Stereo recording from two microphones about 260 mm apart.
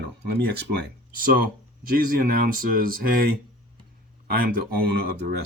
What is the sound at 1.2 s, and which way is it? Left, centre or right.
Speech, right.